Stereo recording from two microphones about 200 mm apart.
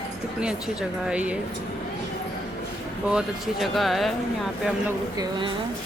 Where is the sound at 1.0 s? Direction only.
5° right (ahead or behind).